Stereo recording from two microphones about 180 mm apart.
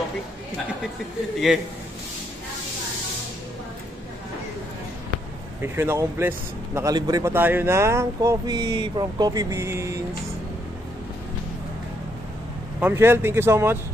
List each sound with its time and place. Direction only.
5.6 s a man's voice: 15° right (ahead or behind)
12.8 s a man's voice: 15° right (ahead or behind)